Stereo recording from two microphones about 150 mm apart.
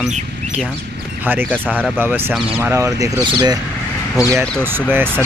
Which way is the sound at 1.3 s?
10° right (ahead or behind).